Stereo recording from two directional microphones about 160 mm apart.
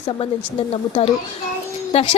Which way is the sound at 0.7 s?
40° left (ahead or behind).